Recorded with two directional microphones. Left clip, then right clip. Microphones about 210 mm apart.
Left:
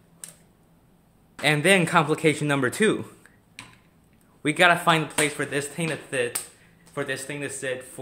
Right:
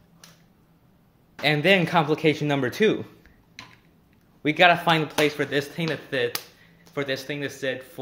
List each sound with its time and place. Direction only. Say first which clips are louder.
1.4 s a man's voice: even; 5° left (ahead or behind)
4.4 s speech: right 1 dB; 5° left (ahead or behind); by 8.0 s 15° right (ahead or behind)